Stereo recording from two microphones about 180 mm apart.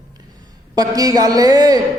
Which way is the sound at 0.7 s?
20° right (ahead or behind).